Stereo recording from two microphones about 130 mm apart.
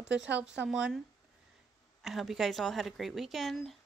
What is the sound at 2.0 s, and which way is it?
Speech, centre (ahead or behind).